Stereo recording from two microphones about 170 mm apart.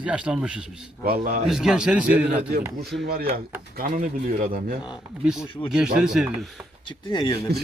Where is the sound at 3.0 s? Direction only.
65° right (ahead or behind).